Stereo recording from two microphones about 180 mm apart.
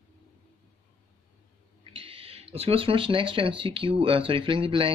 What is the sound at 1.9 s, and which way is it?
Speech, 30° right (ahead or behind).